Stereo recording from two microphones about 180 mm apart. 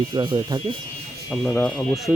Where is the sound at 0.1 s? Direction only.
25° right (ahead or behind).